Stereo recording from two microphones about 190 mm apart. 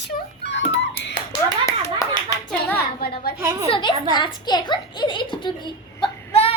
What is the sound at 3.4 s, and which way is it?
Speech, 15° right (ahead or behind).